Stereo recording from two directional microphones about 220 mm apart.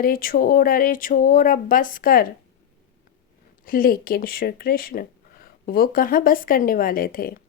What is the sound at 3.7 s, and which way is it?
Speech, 40° left (ahead or behind).